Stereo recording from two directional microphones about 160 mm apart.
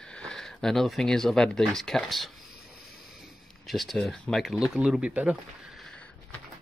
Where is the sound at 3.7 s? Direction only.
Centre (ahead or behind).